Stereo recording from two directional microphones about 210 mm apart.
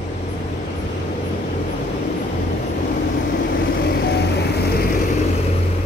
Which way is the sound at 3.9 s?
50° left (ahead or behind).